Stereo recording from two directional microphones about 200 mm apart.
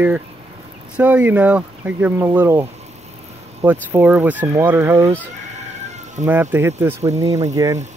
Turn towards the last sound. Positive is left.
turn(degrees=-15)  # may be behind; listen again after turning